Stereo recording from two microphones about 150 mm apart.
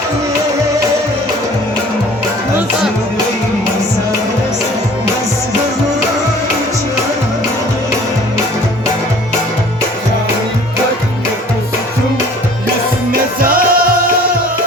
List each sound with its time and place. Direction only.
13.1 s music: 75° right (ahead or behind)